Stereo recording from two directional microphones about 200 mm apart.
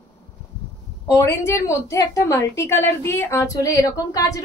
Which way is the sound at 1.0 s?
15° left (ahead or behind).